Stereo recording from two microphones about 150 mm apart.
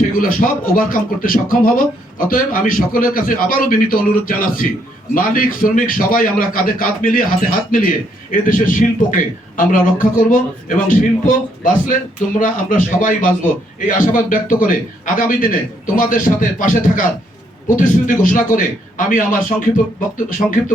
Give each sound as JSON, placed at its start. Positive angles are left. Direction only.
{"t": 0.2, "sound": "a man's voice", "side_deg": 65}